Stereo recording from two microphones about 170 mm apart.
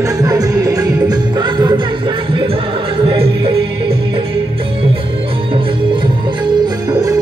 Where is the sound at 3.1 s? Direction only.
30° right (ahead or behind).